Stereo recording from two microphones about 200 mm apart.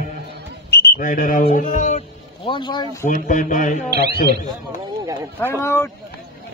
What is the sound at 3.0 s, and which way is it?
Speech, 40° left (ahead or behind).